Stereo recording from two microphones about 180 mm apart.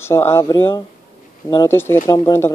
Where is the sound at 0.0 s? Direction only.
15° left (ahead or behind).